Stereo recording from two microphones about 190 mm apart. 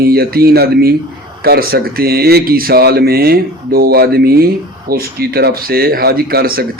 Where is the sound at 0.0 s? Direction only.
55° right (ahead or behind).